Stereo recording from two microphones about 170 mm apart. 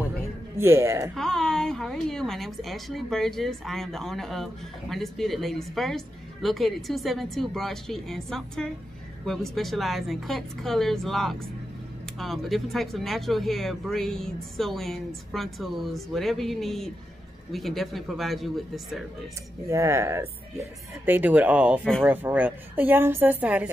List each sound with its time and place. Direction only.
0.6 s a woman's voice: 15° right (ahead or behind)
1.1 s a woman's voice: 5° left (ahead or behind)
19.7 s a woman's voice: 15° right (ahead or behind)